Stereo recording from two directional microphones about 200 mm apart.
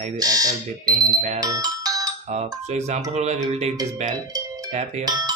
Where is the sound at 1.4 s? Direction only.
20° right (ahead or behind).